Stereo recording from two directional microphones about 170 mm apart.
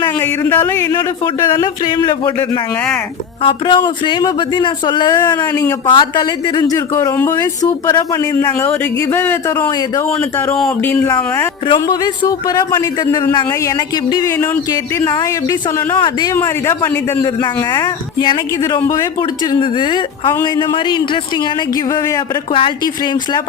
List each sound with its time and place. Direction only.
0.0 s a man's voice: 15° left (ahead or behind); by 2.3 s 30° left (ahead or behind)
2.4 s speech: 5° left (ahead or behind)
3.4 s a man's voice: 30° left (ahead or behind); by 11.1 s 10° left (ahead or behind)
11.7 s a man's voice: 25° left (ahead or behind)
16.3 s a man's voice: 15° left (ahead or behind)
19.5 s a man's voice: 30° left (ahead or behind)
22.5 s speech: 30° left (ahead or behind)